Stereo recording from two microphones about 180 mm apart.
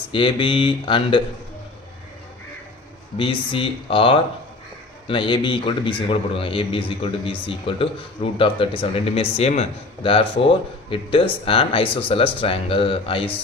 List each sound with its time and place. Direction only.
0.1 s speech: 30° left (ahead or behind)
3.2 s speech: 30° left (ahead or behind)